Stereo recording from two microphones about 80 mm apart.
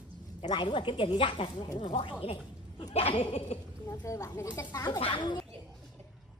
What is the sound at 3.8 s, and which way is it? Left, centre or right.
Speech, left.